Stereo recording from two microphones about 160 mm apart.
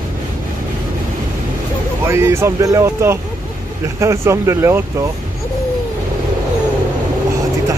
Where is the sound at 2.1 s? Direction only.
15° right (ahead or behind).